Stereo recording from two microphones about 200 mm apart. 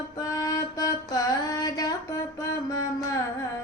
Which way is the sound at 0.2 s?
20° left (ahead or behind).